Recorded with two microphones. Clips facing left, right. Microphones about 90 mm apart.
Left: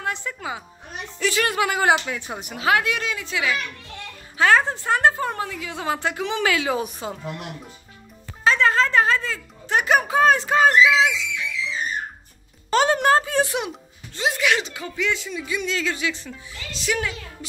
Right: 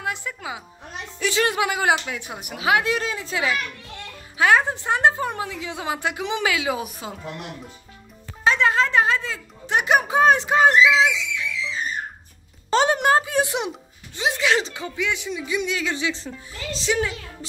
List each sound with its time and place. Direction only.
0.0 s a woman's voice: 5° right (ahead or behind)
1.2 s a woman's voice: 20° right (ahead or behind)
2.8 s a woman's voice: 35° right (ahead or behind)
4.4 s a woman's voice: 10° right (ahead or behind)
8.5 s a woman's voice: 15° right (ahead or behind)
12.6 s a woman's voice: 20° right (ahead or behind)